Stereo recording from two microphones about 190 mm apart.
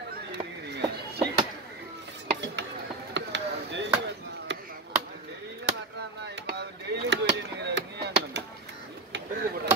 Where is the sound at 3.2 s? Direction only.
70° right (ahead or behind).